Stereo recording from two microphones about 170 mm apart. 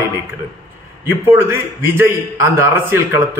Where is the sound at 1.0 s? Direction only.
15° right (ahead or behind).